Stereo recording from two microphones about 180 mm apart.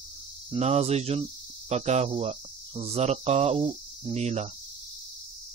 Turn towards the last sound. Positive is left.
turn(degrees=-35)  # may be behind; listen again after turning